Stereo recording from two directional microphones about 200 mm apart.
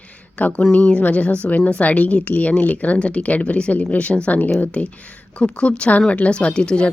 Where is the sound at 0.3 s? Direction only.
5° left (ahead or behind).